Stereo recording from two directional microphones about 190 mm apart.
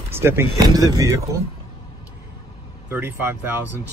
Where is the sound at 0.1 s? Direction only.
15° right (ahead or behind).